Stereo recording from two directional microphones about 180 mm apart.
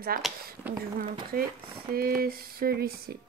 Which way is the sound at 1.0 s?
55° right (ahead or behind).